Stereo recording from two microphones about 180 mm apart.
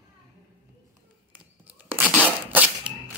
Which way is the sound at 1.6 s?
10° right (ahead or behind).